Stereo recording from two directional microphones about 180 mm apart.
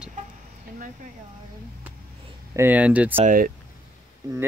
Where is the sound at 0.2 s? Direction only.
45° right (ahead or behind).